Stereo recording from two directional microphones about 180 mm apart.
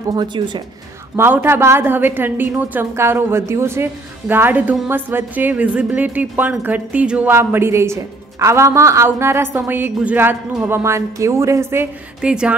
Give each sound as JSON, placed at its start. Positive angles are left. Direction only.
{"t": 0.1, "sound": "speech", "side_deg": -25}
{"t": 1.1, "sound": "a woman's voice", "side_deg": -15}